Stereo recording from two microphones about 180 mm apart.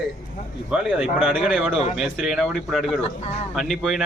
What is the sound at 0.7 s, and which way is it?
Speech, 5° right (ahead or behind).